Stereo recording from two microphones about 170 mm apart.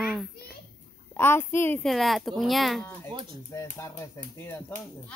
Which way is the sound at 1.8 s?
Centre (ahead or behind).